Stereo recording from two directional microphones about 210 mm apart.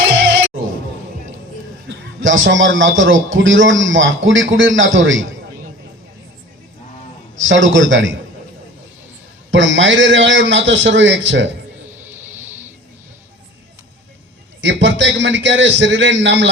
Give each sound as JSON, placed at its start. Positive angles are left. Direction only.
{"t": 1.9, "sound": "a man's voice", "side_deg": -65}
{"t": 7.4, "sound": "a man's voice", "side_deg": -65}
{"t": 9.5, "sound": "a man's voice", "side_deg": -65}
{"t": 11.9, "sound": "music", "side_deg": -10}
{"t": 14.6, "sound": "a man's voice", "side_deg": -60}